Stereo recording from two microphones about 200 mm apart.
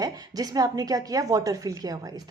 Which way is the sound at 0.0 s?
20° right (ahead or behind).